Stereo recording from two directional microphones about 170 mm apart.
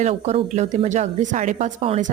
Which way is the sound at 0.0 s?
40° right (ahead or behind).